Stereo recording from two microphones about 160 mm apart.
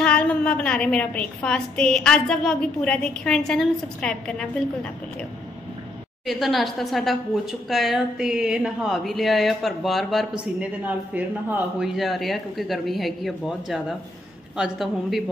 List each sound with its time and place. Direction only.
0.0 s a woman's voice: 5° left (ahead or behind)
6.2 s a woman's voice: centre (ahead or behind)